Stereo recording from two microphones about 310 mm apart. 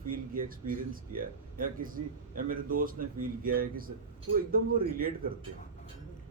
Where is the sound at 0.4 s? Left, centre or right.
Right.